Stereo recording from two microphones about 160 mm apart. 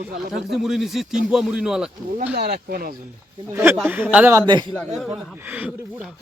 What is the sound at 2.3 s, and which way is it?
Speech, 90° right.